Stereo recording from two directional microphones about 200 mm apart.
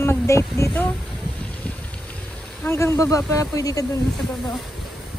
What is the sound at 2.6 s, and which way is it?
Speech, 15° left (ahead or behind).